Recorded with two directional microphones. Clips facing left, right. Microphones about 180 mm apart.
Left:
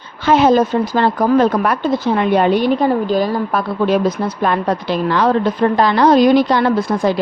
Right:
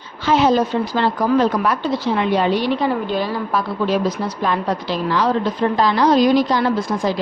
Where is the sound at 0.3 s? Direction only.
55° left (ahead or behind).